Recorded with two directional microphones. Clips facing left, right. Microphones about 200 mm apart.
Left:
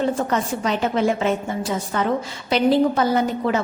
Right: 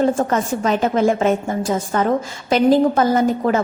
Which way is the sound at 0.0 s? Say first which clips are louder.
Right 4 dB; 45° right (ahead or behind).